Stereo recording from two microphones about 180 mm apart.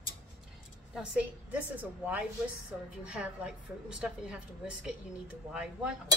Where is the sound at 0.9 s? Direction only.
5° right (ahead or behind).